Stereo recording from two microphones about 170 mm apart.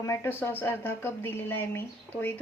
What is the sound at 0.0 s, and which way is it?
Speech, 15° left (ahead or behind).